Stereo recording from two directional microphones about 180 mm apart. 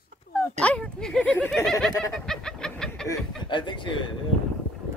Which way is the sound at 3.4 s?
25° left (ahead or behind).